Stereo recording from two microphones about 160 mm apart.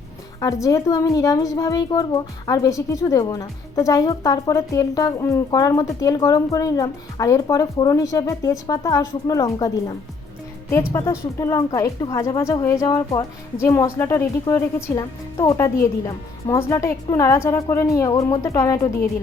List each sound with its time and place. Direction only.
0.3 s a woman's voice: 20° left (ahead or behind)
10.9 s a woman's voice: 20° left (ahead or behind)